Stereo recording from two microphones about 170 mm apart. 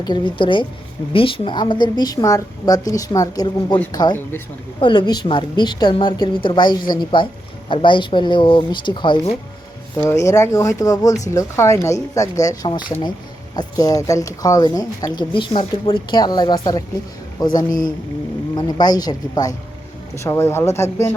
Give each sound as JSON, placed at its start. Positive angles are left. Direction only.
{"t": 0.0, "sound": "a woman's voice", "side_deg": 25}
{"t": 10.0, "sound": "a woman's voice", "side_deg": 15}